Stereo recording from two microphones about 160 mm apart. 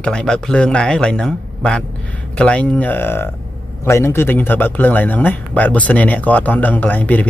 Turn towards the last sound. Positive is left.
turn(degrees=10)  # may be behind; listen again after turning